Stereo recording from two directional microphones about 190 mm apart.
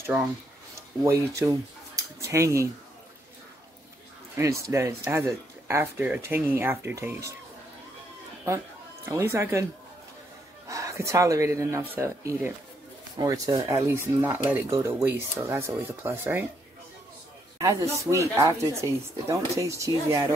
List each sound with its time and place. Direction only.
1.0 s speech: 15° right (ahead or behind)
4.4 s speech: 15° right (ahead or behind)
9.0 s speech: 15° right (ahead or behind)
10.7 s speech: 15° right (ahead or behind)
17.6 s speech: 15° right (ahead or behind)